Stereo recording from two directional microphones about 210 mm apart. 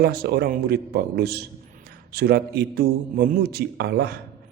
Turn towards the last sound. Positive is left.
turn(degrees=-50)  # may be behind; listen again after turning